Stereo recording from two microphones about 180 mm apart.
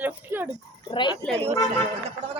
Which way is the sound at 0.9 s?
25° left (ahead or behind).